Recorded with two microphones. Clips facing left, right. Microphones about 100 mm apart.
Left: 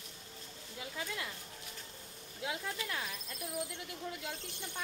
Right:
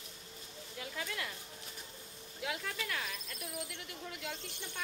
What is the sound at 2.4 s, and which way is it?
Speech, 20° left (ahead or behind).